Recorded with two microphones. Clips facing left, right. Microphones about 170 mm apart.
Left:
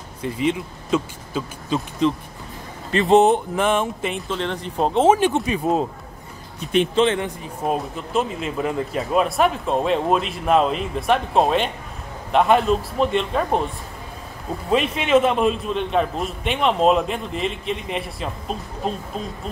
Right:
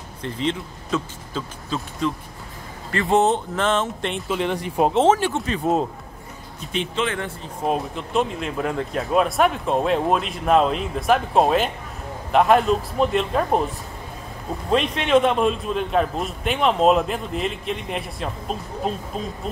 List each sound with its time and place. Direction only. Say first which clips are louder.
0.2 s speech: left 3 dB; 10° left (ahead or behind)
4.3 s speech: right 2 dB; 10° right (ahead or behind)
5.0 s speech: left 2 dB; 15° left (ahead or behind)
5.6 s a man's voice: right 2 dB; centre (ahead or behind)
6.7 s speech: left 8 dB; 55° left (ahead or behind)
7.6 s a man's voice: even; centre (ahead or behind)
14.7 s a man's voice: left 1 dB; 5° left (ahead or behind)